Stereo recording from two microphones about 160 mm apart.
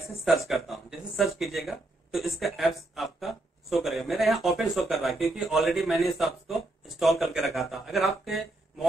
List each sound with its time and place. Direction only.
0.5 s speech: centre (ahead or behind)